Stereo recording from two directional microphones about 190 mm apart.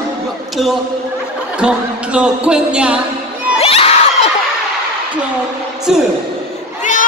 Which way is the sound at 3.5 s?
30° left (ahead or behind).